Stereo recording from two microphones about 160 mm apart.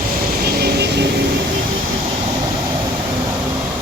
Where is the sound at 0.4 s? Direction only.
75° right (ahead or behind).